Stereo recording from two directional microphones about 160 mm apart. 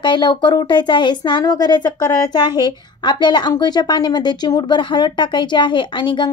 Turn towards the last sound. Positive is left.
turn(degrees=30)  # may be behind; listen again after turning